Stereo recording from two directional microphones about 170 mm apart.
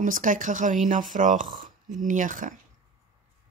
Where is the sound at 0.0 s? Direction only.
50° right (ahead or behind).